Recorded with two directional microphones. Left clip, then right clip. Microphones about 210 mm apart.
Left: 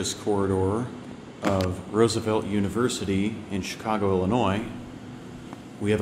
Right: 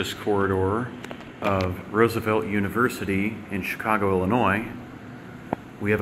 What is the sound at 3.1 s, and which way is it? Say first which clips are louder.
Speech: right 1 dB; 20° left (ahead or behind).